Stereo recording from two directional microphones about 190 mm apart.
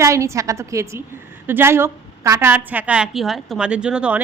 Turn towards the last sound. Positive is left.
turn(degrees=-5)  # may be behind; listen again after turning